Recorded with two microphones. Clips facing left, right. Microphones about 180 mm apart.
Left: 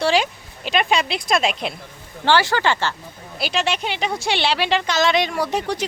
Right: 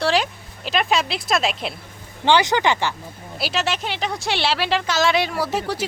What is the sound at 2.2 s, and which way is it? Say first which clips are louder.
Speech: right 1 dB; 20° right (ahead or behind).